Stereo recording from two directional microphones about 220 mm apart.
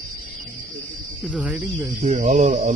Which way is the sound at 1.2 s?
5° right (ahead or behind).